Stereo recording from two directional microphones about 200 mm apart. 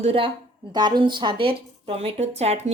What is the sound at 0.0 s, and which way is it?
A woman's voice, 30° right (ahead or behind).